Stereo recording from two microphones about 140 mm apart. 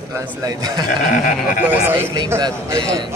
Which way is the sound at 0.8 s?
80° left.